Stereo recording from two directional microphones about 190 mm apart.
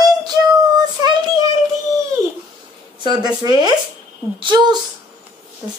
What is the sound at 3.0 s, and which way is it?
Speech, 25° right (ahead or behind).